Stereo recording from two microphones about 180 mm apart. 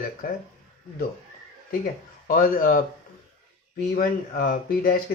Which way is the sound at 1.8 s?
50° left (ahead or behind).